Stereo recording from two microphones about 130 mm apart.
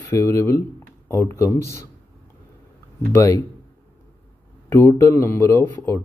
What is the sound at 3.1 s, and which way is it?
Speech, 25° left (ahead or behind).